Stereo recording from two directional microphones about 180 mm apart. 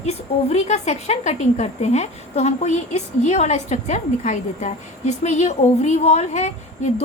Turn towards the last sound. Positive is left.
turn(degrees=40)  # may be behind; listen again after turning